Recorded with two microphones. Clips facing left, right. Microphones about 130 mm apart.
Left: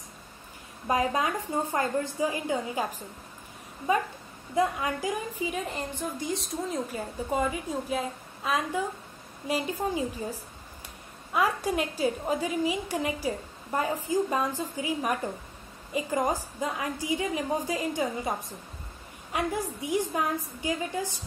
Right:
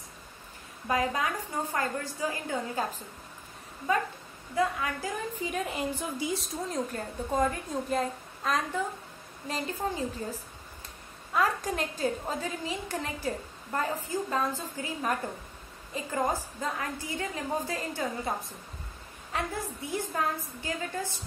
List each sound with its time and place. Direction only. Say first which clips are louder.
0.8 s a woman's voice: left 2 dB; 20° left (ahead or behind)
4.6 s a woman's voice: left 2 dB; 20° left (ahead or behind)
5.4 s a woman's voice: even; centre (ahead or behind)
19.3 s a woman's voice: left 4 dB; 15° left (ahead or behind)